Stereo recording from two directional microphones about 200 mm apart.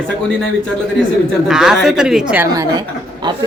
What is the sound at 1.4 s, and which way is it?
Speech, centre (ahead or behind).